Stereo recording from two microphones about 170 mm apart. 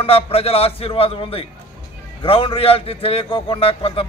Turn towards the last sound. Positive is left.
turn(degrees=35)  # may be behind; listen again after turning